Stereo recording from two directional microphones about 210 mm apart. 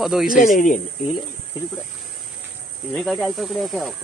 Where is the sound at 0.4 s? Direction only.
35° left (ahead or behind).